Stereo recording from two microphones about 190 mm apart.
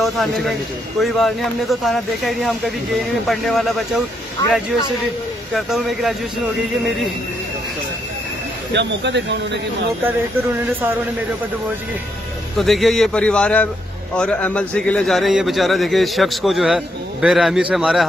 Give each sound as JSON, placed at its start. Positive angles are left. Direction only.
{"t": 0.0, "sound": "a man's voice", "side_deg": 0}
{"t": 8.7, "sound": "speech", "side_deg": -65}
{"t": 12.5, "sound": "a man's voice", "side_deg": 0}